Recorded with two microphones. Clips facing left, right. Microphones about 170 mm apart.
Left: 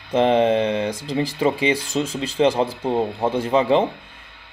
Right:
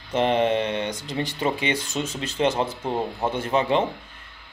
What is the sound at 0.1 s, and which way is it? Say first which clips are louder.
Speech: left 4 dB; 30° left (ahead or behind).